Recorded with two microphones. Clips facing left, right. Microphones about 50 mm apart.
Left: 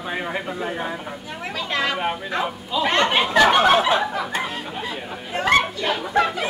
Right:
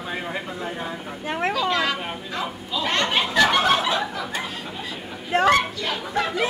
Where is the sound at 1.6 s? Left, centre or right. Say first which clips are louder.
Left 1 dB; left.